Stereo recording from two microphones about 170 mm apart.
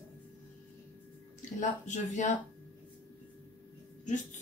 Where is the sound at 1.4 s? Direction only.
45° left (ahead or behind).